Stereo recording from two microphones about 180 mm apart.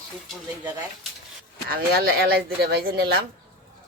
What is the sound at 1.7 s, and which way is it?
Speech, 55° right (ahead or behind).